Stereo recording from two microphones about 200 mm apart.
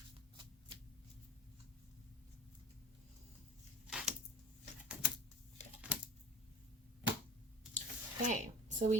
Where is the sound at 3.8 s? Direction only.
5° right (ahead or behind).